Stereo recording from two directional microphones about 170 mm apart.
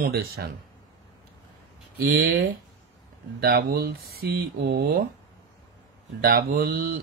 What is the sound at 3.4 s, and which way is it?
Speech, 65° right (ahead or behind).